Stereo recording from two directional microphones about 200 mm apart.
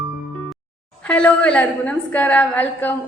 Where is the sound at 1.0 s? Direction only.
5° left (ahead or behind).